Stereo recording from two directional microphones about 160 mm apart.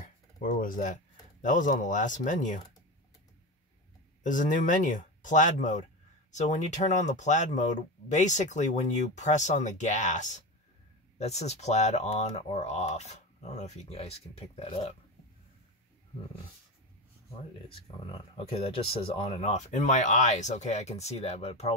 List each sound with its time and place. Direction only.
0.0 s speech: 55° left (ahead or behind)
4.2 s speech: 55° left (ahead or behind)
18.1 s speech: 40° left (ahead or behind)